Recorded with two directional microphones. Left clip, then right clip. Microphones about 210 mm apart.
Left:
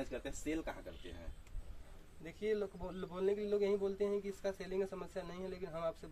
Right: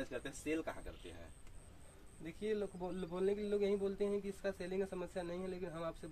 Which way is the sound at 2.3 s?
10° right (ahead or behind).